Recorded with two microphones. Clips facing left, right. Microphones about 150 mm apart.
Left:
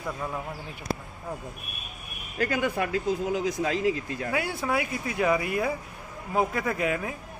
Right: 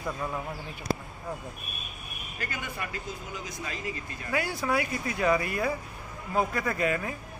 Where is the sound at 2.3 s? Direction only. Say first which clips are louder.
Left 11 dB; 90° left.